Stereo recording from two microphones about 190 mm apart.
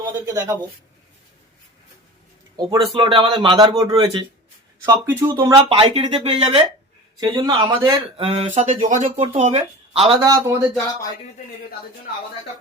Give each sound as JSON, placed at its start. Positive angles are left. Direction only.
{"t": 0.3, "sound": "a man's voice", "side_deg": -15}
{"t": 2.6, "sound": "a man's voice", "side_deg": -25}
{"t": 8.2, "sound": "speech", "side_deg": -30}
{"t": 10.2, "sound": "a man's voice", "side_deg": -15}